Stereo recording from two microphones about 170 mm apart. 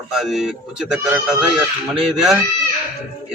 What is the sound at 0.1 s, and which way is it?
Speech, centre (ahead or behind).